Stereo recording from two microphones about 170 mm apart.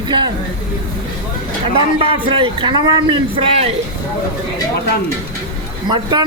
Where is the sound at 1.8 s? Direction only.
30° right (ahead or behind).